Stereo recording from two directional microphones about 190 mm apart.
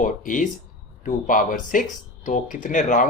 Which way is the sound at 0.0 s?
45° left (ahead or behind).